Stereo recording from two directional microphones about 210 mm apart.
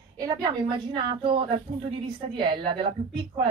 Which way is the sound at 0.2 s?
20° right (ahead or behind).